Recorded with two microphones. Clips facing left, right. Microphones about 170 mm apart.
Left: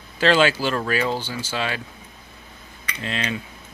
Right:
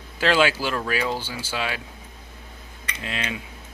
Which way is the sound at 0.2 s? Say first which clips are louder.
Left 2 dB; 10° right (ahead or behind).